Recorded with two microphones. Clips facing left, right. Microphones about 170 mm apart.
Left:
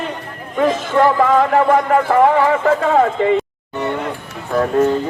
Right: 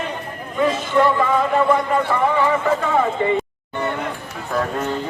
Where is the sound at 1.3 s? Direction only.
85° left.